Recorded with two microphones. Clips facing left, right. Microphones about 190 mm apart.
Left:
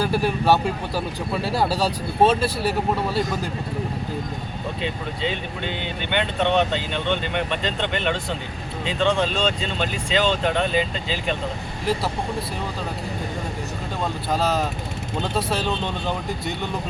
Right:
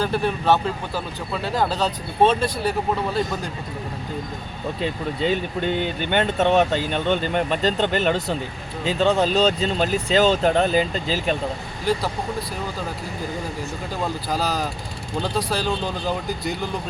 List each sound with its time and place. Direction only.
0.0 s speech: 10° left (ahead or behind)
5.5 s speech: 45° right (ahead or behind)
11.9 s speech: centre (ahead or behind)
14.3 s speech: centre (ahead or behind)